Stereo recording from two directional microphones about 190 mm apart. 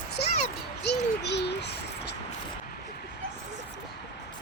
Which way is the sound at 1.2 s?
65° left (ahead or behind).